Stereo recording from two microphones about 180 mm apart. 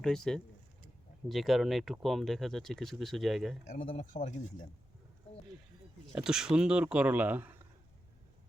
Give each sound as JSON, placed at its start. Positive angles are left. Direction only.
{"t": 0.0, "sound": "speech", "side_deg": 5}
{"t": 3.8, "sound": "speech", "side_deg": 35}
{"t": 6.1, "sound": "speech", "side_deg": -5}